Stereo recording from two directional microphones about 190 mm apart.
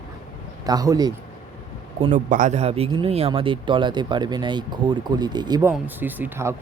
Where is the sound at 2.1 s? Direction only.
40° right (ahead or behind); by 5.7 s 20° right (ahead or behind).